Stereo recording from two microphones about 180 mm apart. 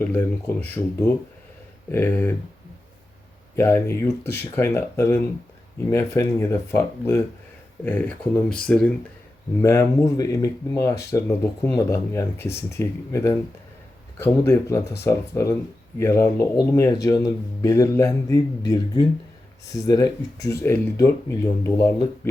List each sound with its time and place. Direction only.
0.0 s speech: 10° left (ahead or behind)
3.5 s speech: 15° left (ahead or behind)
9.6 s speech: 15° left (ahead or behind)